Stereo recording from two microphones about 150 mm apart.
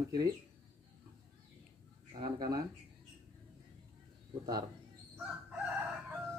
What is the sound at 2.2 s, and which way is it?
Speech, 25° right (ahead or behind).